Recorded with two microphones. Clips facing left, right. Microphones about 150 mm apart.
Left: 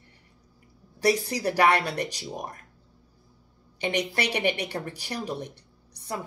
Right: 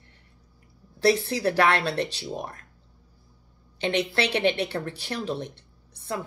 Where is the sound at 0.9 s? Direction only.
15° left (ahead or behind).